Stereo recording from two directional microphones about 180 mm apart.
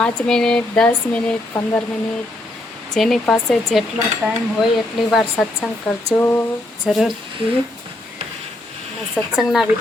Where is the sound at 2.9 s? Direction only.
Centre (ahead or behind).